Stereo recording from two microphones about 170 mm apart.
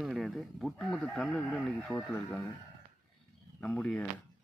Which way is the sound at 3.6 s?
5° left (ahead or behind).